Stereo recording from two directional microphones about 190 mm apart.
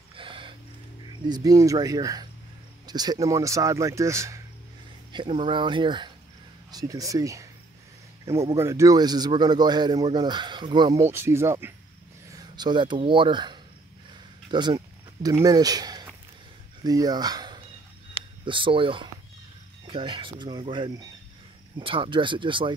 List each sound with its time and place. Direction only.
0.1 s a sound: 25° right (ahead or behind)
1.2 s a man's voice: 20° right (ahead or behind)
5.1 s a man's voice: 25° right (ahead or behind)